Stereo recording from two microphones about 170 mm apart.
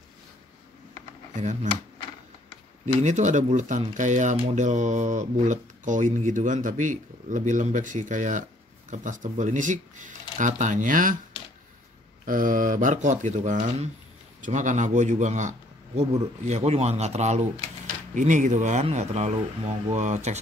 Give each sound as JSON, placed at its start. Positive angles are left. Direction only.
{"t": 1.3, "sound": "speech", "side_deg": -45}
{"t": 2.8, "sound": "speech", "side_deg": -45}
{"t": 12.3, "sound": "speech", "side_deg": -50}